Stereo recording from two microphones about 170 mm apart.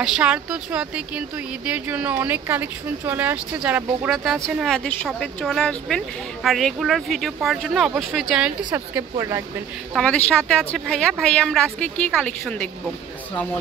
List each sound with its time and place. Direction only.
0.0 s speech: 5° right (ahead or behind)
8.7 s speech: 15° right (ahead or behind)
9.9 s speech: 5° left (ahead or behind)